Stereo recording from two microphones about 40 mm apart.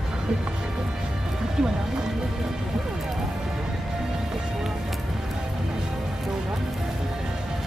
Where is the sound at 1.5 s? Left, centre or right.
Centre.